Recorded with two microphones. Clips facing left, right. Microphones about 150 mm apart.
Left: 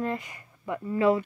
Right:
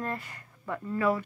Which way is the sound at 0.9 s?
25° left (ahead or behind).